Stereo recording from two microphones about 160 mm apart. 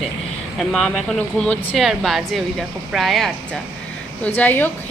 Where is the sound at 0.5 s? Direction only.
5° left (ahead or behind).